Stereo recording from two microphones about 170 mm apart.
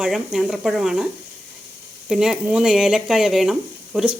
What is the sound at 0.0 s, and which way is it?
A woman's voice, 5° right (ahead or behind).